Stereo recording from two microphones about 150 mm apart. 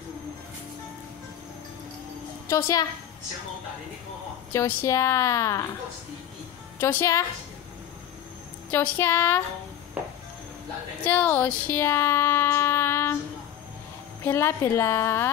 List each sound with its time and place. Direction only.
2.4 s a woman's voice: 20° left (ahead or behind)
4.5 s a woman's voice: 20° left (ahead or behind)
6.8 s a woman's voice: 15° left (ahead or behind)
8.6 s a woman's voice: 15° left (ahead or behind)
11.1 s speech: 10° left (ahead or behind)
14.2 s a woman's voice: 20° left (ahead or behind)